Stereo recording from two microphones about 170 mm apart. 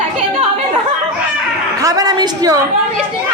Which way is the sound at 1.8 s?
20° right (ahead or behind).